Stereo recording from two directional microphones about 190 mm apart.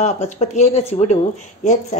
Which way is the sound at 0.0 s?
35° left (ahead or behind).